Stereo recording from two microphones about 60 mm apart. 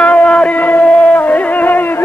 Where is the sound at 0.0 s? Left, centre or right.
Left.